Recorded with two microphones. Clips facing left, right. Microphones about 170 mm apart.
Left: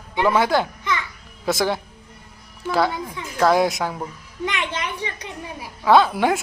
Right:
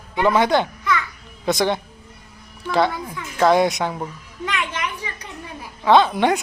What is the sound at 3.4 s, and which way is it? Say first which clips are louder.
Speech: right 1 dB; centre (ahead or behind).